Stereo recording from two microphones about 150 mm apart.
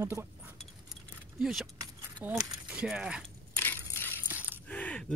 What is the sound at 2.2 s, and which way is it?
Speech, 10° right (ahead or behind).